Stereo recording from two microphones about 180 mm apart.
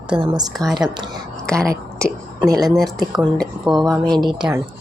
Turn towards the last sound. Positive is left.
turn(degrees=0)  # may be behind; listen again after turning